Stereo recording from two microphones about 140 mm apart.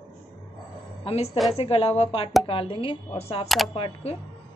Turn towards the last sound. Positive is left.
turn(degrees=45)  # may be behind; listen again after turning